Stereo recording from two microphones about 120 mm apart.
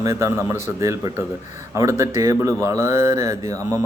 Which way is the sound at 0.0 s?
25° right (ahead or behind).